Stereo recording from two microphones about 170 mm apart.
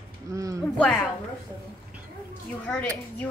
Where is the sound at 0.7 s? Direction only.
5° left (ahead or behind).